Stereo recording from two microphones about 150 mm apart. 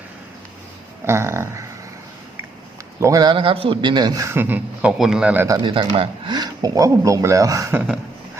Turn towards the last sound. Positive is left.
turn(degrees=-20)  # may be behind; listen again after turning